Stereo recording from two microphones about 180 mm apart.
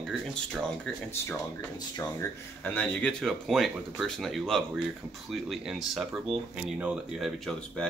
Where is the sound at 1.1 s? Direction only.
10° left (ahead or behind).